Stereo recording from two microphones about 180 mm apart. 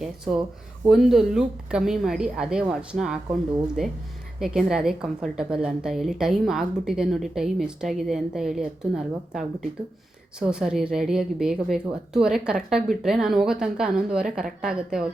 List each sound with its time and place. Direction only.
0.0 s a woman's voice: 5° right (ahead or behind)